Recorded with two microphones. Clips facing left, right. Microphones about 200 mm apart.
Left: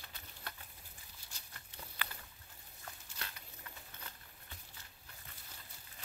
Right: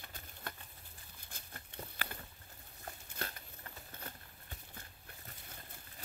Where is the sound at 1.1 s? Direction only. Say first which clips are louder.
Right 7 dB; 55° right (ahead or behind).